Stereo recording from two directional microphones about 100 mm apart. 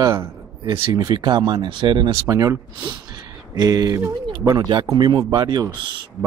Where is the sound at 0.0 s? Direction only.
30° right (ahead or behind).